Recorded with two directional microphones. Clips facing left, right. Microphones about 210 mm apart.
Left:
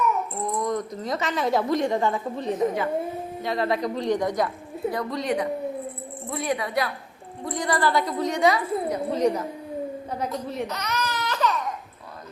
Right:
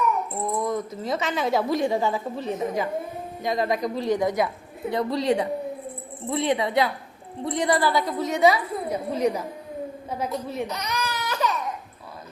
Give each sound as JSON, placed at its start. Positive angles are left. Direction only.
{"t": 0.5, "sound": "a woman's voice", "side_deg": -5}
{"t": 4.9, "sound": "a woman's voice", "side_deg": -25}
{"t": 7.8, "sound": "a woman's voice", "side_deg": -5}
{"t": 10.1, "sound": "baby cry", "side_deg": -5}